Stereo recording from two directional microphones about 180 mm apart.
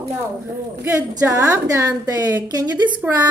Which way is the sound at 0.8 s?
20° right (ahead or behind).